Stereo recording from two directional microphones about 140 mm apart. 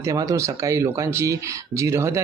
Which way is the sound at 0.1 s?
20° right (ahead or behind).